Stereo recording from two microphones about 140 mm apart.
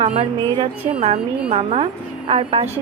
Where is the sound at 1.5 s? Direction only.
50° right (ahead or behind).